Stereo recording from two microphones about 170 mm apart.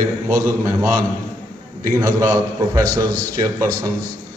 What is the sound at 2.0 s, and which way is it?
A man's voice, 20° right (ahead or behind).